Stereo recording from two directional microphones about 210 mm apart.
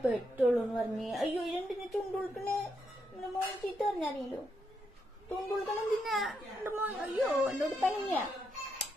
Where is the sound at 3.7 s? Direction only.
Centre (ahead or behind).